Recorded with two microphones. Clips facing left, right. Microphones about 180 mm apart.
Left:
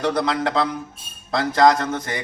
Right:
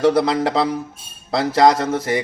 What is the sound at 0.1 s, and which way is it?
Speech, 30° right (ahead or behind).